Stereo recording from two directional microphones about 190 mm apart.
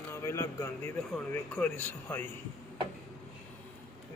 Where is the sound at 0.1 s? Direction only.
15° left (ahead or behind).